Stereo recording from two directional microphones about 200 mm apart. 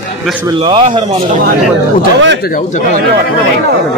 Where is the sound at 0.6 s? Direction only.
25° right (ahead or behind).